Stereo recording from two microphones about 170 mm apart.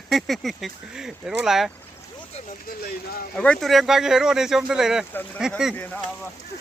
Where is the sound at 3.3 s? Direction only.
5° left (ahead or behind).